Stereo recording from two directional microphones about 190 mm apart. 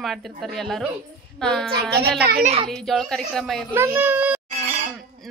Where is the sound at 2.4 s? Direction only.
30° right (ahead or behind).